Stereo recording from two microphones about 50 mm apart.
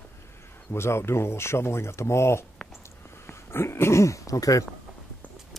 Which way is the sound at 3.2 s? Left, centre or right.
Left.